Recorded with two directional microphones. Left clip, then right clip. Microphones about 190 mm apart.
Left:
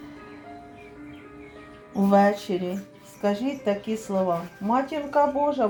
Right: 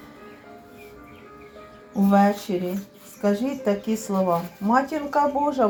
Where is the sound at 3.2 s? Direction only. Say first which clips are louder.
Right 2 dB; 5° right (ahead or behind).